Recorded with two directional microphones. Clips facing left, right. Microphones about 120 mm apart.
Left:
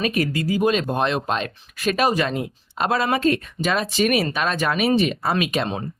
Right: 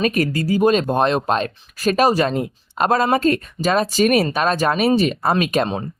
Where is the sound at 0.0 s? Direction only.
45° right (ahead or behind).